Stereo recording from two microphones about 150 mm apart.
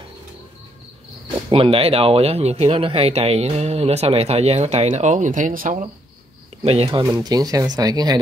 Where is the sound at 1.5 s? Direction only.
40° right (ahead or behind); by 5.9 s 60° right (ahead or behind).